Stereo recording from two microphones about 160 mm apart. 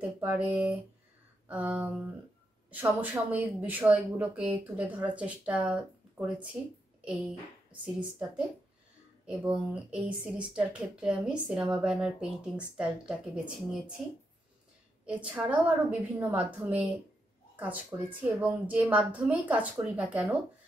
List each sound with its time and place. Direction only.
0.2 s a woman's voice: 10° right (ahead or behind)
7.8 s a woman's voice: 5° right (ahead or behind)
15.0 s a woman's voice: 10° right (ahead or behind)
18.2 s a woman's voice: 10° right (ahead or behind)